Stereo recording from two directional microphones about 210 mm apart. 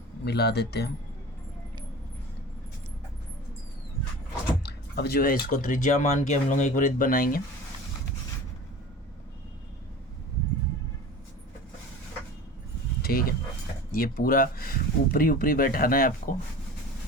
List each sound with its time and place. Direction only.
0.3 s speech: 50° left (ahead or behind)
4.6 s speech: 50° left (ahead or behind)
13.0 s dog: 45° left (ahead or behind)
13.9 s speech: 45° left (ahead or behind)